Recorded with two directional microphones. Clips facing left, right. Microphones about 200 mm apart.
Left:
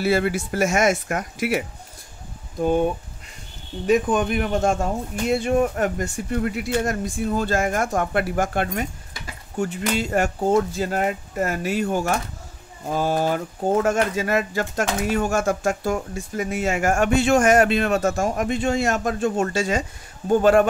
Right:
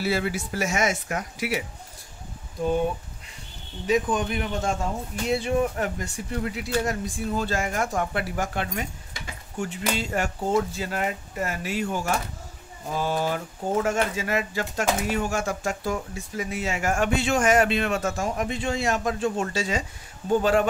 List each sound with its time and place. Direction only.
0.0 s speech: 50° left (ahead or behind)
3.8 s speech: 55° left (ahead or behind)